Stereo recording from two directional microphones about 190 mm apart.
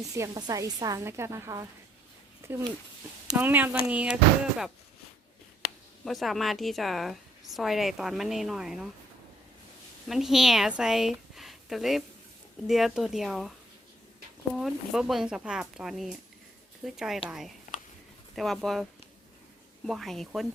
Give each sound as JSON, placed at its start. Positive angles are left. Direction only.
{"t": 0.0, "sound": "a woman's voice", "side_deg": -20}
{"t": 2.4, "sound": "a sound", "side_deg": -15}
{"t": 3.3, "sound": "a woman's voice", "side_deg": -10}
{"t": 6.1, "sound": "a woman's voice", "side_deg": 0}
{"t": 10.1, "sound": "a woman's voice", "side_deg": 0}
{"t": 14.5, "sound": "a woman's voice", "side_deg": 0}
{"t": 19.9, "sound": "a woman's voice", "side_deg": 0}